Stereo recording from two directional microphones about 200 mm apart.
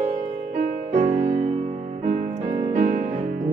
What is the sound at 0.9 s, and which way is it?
Music, 35° right (ahead or behind).